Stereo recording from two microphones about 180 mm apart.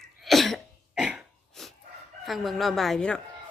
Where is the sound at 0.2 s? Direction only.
Centre (ahead or behind).